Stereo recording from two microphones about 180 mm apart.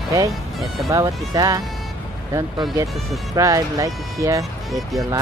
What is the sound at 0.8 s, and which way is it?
Speech, 20° right (ahead or behind).